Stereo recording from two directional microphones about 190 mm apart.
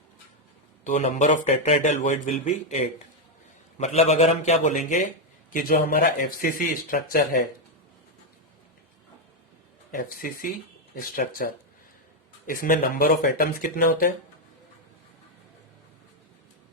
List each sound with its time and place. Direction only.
0.9 s speech: 40° left (ahead or behind)
9.9 s speech: 45° left (ahead or behind)